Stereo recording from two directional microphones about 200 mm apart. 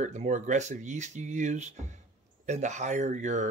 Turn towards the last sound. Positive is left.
turn(degrees=-35)  # may be behind; listen again after turning